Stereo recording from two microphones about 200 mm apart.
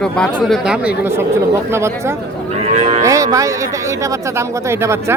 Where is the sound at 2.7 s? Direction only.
35° right (ahead or behind).